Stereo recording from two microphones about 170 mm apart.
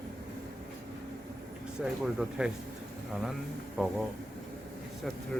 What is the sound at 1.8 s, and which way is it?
Speech, 5° right (ahead or behind).